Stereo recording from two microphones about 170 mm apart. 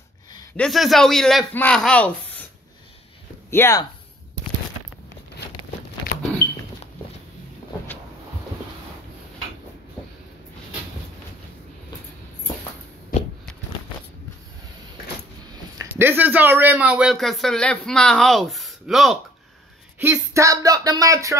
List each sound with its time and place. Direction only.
0.6 s a man's voice: centre (ahead or behind)
3.4 s speech: 15° left (ahead or behind)
6.1 s a sound: 75° left (ahead or behind)
15.8 s a man's voice: 15° right (ahead or behind)
20.0 s speech: 15° right (ahead or behind)